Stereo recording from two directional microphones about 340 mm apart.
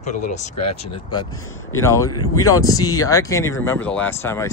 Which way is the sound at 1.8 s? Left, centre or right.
Centre.